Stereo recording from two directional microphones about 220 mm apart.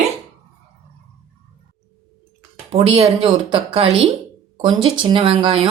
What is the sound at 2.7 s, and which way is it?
Speech, 25° right (ahead or behind).